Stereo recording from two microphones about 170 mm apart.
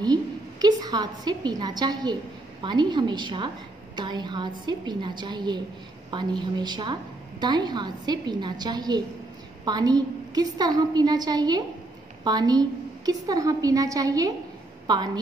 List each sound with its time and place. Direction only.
0.0 s a woman's voice: 25° right (ahead or behind)